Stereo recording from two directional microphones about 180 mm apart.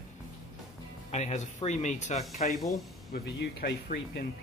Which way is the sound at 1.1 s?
40° left (ahead or behind).